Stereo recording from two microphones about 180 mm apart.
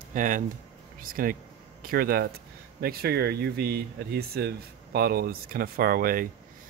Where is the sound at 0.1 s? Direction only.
45° right (ahead or behind).